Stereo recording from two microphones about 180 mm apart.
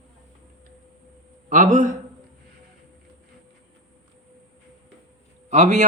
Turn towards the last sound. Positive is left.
turn(degrees=-45)  # may be behind; listen again after turning